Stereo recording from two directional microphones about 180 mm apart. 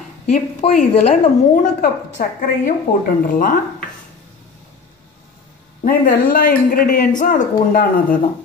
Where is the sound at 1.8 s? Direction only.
45° left (ahead or behind).